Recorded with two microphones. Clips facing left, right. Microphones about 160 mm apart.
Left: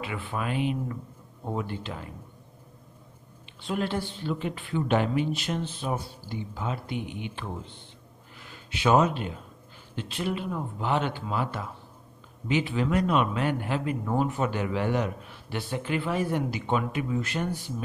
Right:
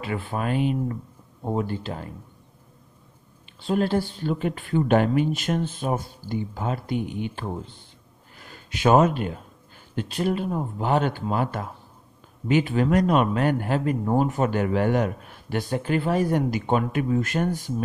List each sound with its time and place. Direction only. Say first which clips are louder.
0.0 s speech: right 4 dB; 40° right (ahead or behind)
3.6 s a man's voice: right 6 dB; 40° right (ahead or behind)